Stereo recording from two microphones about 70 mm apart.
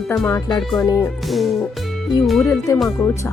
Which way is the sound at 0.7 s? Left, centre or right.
Left.